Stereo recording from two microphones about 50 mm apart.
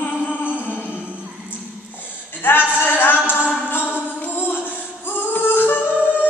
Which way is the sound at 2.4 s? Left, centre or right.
Left.